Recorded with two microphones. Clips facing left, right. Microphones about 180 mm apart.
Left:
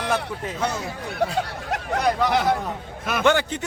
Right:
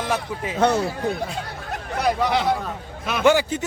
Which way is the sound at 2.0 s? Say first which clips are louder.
Even; centre (ahead or behind).